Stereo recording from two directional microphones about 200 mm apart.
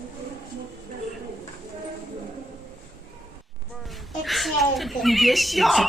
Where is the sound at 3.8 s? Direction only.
Centre (ahead or behind).